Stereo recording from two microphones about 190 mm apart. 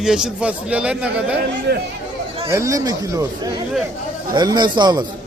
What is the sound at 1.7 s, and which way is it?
Speech, 60° right (ahead or behind).